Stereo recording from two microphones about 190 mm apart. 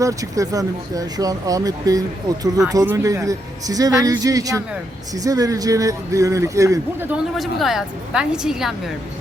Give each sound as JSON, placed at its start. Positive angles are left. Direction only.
{"t": 0.0, "sound": "speech", "side_deg": -15}
{"t": 7.3, "sound": "a woman's voice", "side_deg": 0}